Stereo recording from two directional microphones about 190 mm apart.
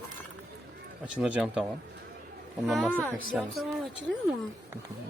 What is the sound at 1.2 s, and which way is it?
Speech, 5° right (ahead or behind).